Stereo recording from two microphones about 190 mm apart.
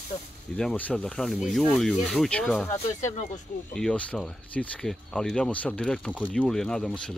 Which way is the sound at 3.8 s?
5° left (ahead or behind).